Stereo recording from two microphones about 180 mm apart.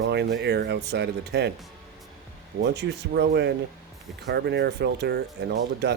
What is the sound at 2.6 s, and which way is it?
Speech, 65° right (ahead or behind).